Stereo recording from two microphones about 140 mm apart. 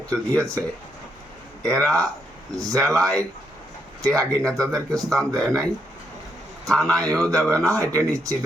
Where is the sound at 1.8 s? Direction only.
25° right (ahead or behind).